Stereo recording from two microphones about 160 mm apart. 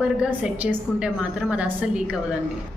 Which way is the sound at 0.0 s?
5° right (ahead or behind).